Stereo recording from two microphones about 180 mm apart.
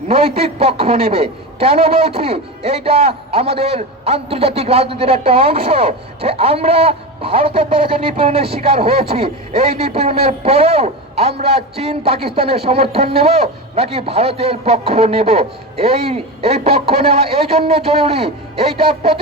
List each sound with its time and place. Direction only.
0.3 s speech: 35° right (ahead or behind)